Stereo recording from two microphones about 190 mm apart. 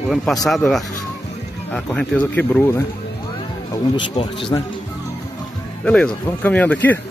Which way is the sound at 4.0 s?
25° left (ahead or behind).